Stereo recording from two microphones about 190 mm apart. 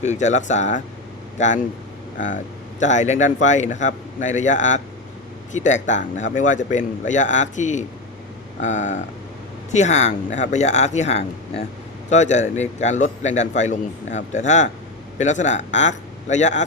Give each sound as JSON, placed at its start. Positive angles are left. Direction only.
{"t": 0.0, "sound": "a man's voice", "side_deg": 40}